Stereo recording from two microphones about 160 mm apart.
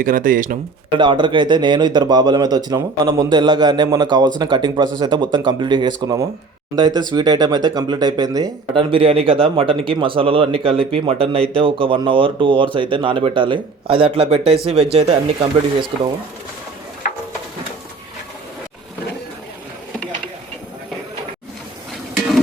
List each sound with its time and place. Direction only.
0.0 s speech: 60° right (ahead or behind)
0.9 s speech: 30° right (ahead or behind)